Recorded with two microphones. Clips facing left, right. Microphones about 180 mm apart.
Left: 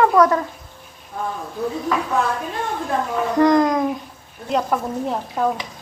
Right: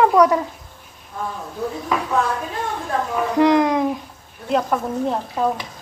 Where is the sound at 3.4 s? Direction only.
5° right (ahead or behind).